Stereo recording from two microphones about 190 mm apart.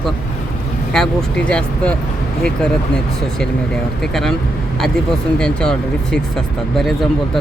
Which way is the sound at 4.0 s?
Centre (ahead or behind).